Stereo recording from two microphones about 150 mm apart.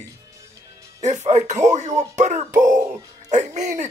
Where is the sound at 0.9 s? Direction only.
50° right (ahead or behind).